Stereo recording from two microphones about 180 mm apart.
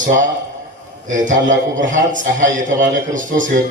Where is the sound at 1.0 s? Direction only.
45° right (ahead or behind).